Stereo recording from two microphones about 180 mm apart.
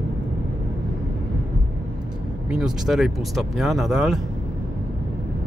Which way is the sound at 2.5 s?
5° right (ahead or behind).